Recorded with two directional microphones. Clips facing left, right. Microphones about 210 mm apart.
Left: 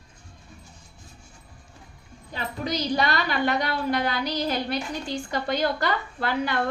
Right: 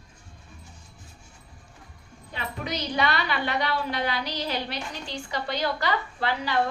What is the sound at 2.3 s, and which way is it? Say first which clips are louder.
A woman's voice: left 3 dB; 40° left (ahead or behind).